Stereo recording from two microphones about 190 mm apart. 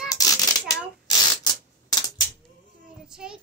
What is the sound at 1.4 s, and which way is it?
Typewriter, 20° left (ahead or behind).